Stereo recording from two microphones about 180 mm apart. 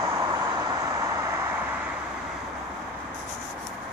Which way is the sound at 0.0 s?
15° right (ahead or behind).